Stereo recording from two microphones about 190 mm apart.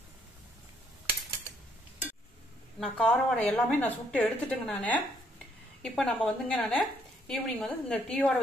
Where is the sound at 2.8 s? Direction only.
5° left (ahead or behind).